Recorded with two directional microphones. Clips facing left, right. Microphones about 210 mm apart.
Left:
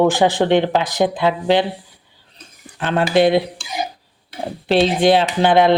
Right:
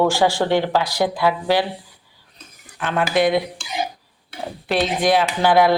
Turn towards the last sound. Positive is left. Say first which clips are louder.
# left 2 dB
turn(degrees=20)  # may be behind; listen again after turning